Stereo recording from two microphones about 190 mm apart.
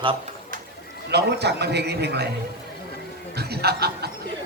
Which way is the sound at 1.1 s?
60° right (ahead or behind).